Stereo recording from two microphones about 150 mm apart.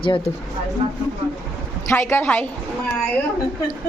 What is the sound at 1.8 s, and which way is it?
Speech, 15° left (ahead or behind).